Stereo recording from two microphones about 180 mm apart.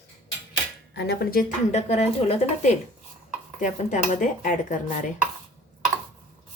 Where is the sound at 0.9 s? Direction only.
65° left (ahead or behind).